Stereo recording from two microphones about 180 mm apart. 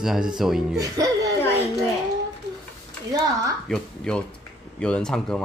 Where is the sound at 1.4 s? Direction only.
10° left (ahead or behind).